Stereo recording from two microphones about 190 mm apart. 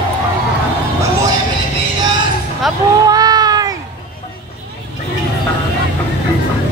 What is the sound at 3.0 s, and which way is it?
Cat, 20° right (ahead or behind).